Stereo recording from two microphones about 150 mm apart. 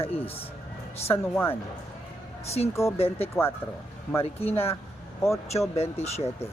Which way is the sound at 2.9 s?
40° left (ahead or behind).